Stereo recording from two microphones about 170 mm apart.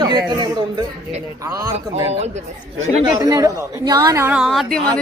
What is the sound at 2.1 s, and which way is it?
Speech, 40° right (ahead or behind).